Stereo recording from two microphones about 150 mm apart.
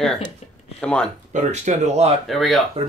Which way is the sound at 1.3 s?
50° right (ahead or behind).